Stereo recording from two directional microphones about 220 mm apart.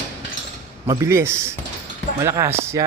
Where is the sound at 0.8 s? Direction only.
15° right (ahead or behind).